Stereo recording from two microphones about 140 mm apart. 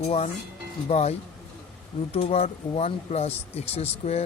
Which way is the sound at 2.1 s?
45° left (ahead or behind).